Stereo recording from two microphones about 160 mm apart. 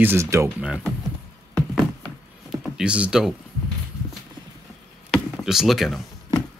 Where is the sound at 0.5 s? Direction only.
5° right (ahead or behind).